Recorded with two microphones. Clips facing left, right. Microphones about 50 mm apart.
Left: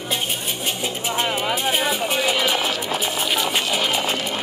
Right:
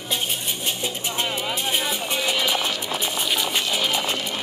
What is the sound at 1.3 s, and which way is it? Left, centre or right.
Music, left.